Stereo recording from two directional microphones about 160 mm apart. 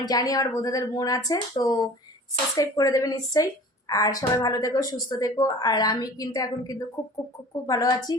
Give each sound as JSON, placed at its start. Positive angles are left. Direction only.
{"t": 0.0, "sound": "a woman's voice", "side_deg": 25}